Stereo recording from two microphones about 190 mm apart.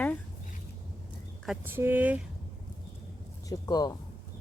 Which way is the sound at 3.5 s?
20° left (ahead or behind).